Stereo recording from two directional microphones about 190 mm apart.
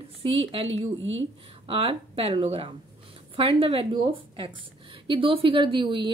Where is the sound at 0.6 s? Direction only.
85° right.